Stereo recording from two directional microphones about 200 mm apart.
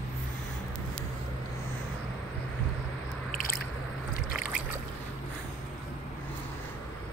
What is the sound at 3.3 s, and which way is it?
Squish, 45° left (ahead or behind).